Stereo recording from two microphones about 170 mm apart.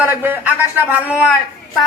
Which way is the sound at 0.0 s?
10° right (ahead or behind).